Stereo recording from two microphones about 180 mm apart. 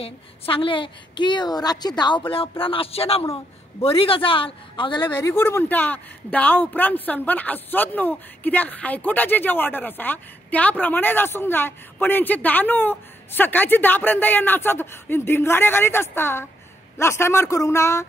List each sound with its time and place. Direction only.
0.0 s a woman's voice: 30° left (ahead or behind)
5.0 s speech: 15° left (ahead or behind)